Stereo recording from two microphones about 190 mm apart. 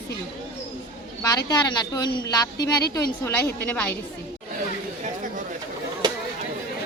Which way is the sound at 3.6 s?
10° left (ahead or behind).